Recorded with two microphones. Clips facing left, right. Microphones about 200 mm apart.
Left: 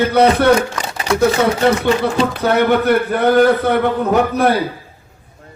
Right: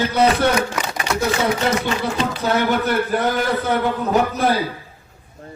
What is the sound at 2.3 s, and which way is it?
A man's voice, 60° left (ahead or behind).